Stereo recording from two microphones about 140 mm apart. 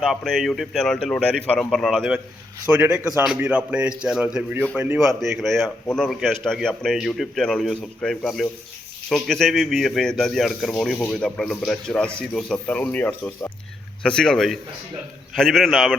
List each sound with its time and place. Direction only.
0.0 s a man's voice: centre (ahead or behind)